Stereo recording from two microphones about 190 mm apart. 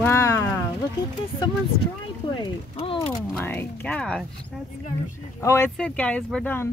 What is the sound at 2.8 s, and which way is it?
Speech, 30° left (ahead or behind).